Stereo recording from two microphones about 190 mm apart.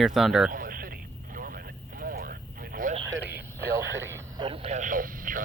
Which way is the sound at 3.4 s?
10° right (ahead or behind).